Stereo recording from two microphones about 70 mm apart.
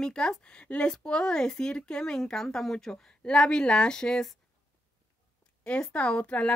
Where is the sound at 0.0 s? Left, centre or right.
Centre.